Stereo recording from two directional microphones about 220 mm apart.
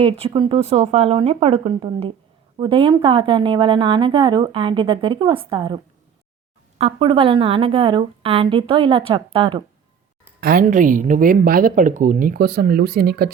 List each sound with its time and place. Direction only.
0.0 s a woman's voice: 25° right (ahead or behind)
10.4 s speech: 40° right (ahead or behind)